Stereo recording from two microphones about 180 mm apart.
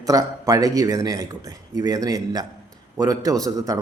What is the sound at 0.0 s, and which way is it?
A man's voice, 20° right (ahead or behind).